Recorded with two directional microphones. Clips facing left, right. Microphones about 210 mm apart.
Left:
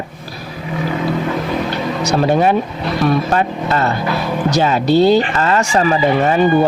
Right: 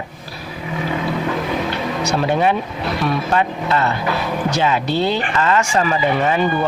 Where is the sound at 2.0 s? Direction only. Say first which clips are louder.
Left 4 dB; 40° left (ahead or behind).